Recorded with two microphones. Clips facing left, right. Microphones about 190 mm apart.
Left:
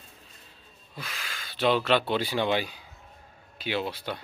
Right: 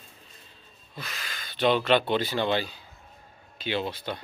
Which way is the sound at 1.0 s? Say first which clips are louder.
Even; 10° left (ahead or behind).